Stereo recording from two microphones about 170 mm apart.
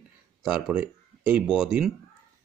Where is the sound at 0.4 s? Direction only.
5° right (ahead or behind).